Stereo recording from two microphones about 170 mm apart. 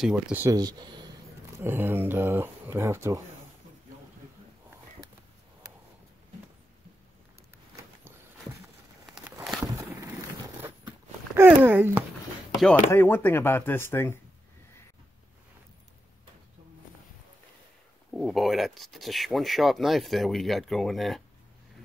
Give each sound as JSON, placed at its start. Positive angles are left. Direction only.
{"t": 0.0, "sound": "speech", "side_deg": -5}
{"t": 0.6, "sound": "speech", "side_deg": -25}
{"t": 1.6, "sound": "speech", "side_deg": -15}
{"t": 11.3, "sound": "speech", "side_deg": -10}
{"t": 12.9, "sound": "speech", "side_deg": 15}
{"t": 18.1, "sound": "speech", "side_deg": 0}